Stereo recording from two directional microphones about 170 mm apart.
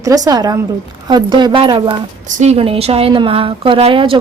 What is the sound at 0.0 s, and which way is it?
A woman's voice, 20° right (ahead or behind).